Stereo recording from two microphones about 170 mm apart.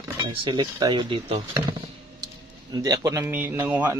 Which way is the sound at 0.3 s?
25° right (ahead or behind).